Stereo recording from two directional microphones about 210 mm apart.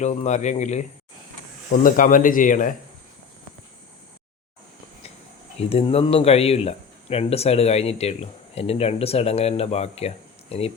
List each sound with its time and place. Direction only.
0.0 s speech: 35° left (ahead or behind)
1.8 s speech: 40° left (ahead or behind)
5.5 s speech: 30° left (ahead or behind)